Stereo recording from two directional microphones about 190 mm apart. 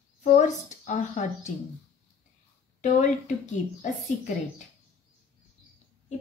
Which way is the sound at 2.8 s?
40° left (ahead or behind).